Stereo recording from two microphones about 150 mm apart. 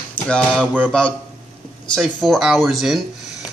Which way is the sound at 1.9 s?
Centre (ahead or behind).